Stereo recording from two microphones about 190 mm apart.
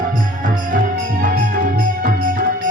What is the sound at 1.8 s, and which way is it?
Music, 45° right (ahead or behind).